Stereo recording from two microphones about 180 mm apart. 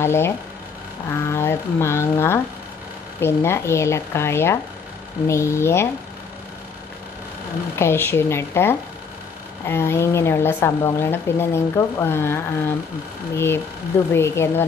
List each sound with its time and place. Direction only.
0.0 s a woman's voice: 15° left (ahead or behind)
7.8 s a woman's voice: 15° left (ahead or behind)
14.1 s a woman's voice: 15° left (ahead or behind)